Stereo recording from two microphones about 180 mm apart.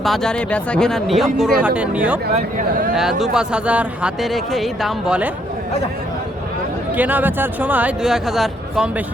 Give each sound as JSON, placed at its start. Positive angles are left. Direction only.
{"t": 0.0, "sound": "a man's voice", "side_deg": 0}
{"t": 2.3, "sound": "speech", "side_deg": -45}
{"t": 2.9, "sound": "a man's voice", "side_deg": 0}
{"t": 6.9, "sound": "speech", "side_deg": -10}